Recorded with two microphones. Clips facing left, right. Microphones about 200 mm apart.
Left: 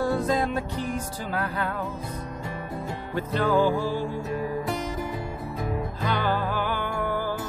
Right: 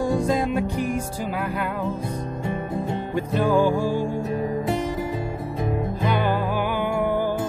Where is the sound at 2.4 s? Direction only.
25° right (ahead or behind).